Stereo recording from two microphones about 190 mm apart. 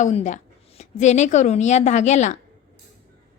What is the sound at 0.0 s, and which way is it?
A woman's voice, 35° left (ahead or behind).